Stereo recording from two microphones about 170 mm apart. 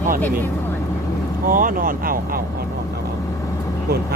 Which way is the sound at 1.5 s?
55° right (ahead or behind).